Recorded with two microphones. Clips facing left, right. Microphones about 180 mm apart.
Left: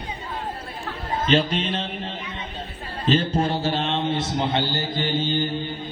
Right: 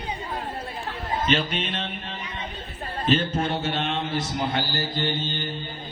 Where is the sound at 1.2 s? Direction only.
35° left (ahead or behind).